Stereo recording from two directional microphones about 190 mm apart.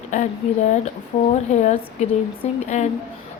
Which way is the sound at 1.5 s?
40° left (ahead or behind).